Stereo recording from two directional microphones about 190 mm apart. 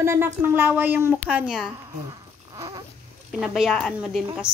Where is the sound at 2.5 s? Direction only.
20° right (ahead or behind).